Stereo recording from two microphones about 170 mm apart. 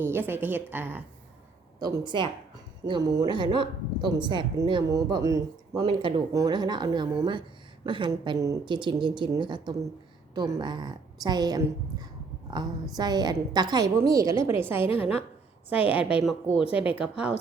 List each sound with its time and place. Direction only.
0.0 s a woman's voice: 15° right (ahead or behind)
1.8 s speech: 25° right (ahead or behind)
14.9 s a woman's voice: 10° right (ahead or behind)